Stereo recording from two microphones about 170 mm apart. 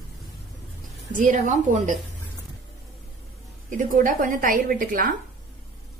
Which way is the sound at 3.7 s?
50° right (ahead or behind).